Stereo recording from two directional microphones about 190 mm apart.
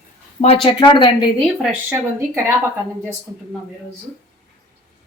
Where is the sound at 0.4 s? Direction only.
30° left (ahead or behind).